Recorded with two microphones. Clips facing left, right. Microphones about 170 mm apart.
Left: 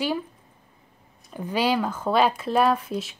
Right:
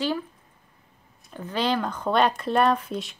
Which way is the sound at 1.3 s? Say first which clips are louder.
Left 2 dB; 10° left (ahead or behind).